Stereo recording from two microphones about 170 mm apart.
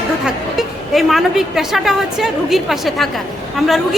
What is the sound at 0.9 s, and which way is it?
A woman's voice, centre (ahead or behind).